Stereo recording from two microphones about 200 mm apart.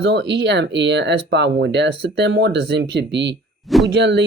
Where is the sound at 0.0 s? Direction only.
60° right (ahead or behind).